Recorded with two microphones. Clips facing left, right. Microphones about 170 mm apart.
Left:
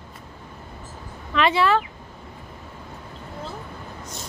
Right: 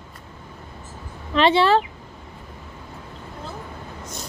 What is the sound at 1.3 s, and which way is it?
Speech, 30° right (ahead or behind).